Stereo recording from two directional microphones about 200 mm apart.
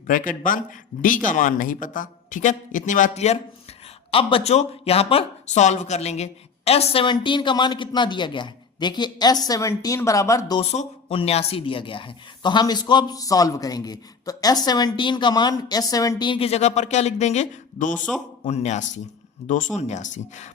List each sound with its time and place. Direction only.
0.1 s a man's voice: 45° left (ahead or behind); by 10.6 s 15° left (ahead or behind)
10.6 s a man's voice: 30° left (ahead or behind)